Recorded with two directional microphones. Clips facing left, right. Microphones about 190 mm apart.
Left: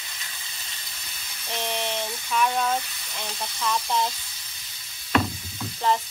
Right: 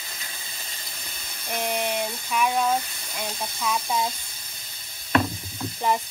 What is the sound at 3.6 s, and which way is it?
Speech, 10° right (ahead or behind).